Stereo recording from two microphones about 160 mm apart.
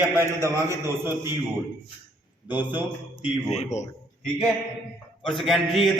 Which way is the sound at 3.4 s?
45° left (ahead or behind).